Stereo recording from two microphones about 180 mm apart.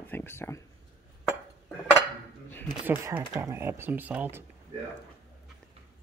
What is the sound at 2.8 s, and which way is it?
Speech, 10° right (ahead or behind).